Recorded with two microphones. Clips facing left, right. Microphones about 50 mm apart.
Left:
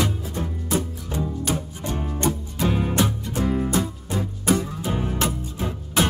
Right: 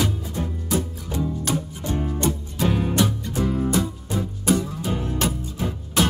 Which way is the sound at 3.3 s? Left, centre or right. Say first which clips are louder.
Even; left.